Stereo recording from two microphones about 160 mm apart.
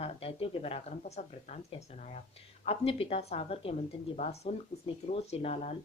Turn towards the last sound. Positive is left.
turn(degrees=40)  # may be behind; listen again after turning